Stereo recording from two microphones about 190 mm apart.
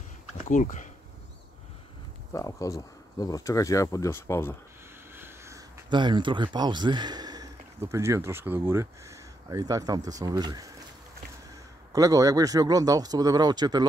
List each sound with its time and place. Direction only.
0.5 s speech: 40° left (ahead or behind)
2.3 s speech: 15° left (ahead or behind)
5.1 s speech: 15° right (ahead or behind)
11.9 s speech: 20° right (ahead or behind)